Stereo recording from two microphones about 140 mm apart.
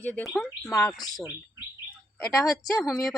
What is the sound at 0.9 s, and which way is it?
Speech, 30° left (ahead or behind).